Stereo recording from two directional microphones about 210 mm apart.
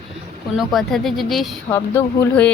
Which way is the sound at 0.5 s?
Centre (ahead or behind).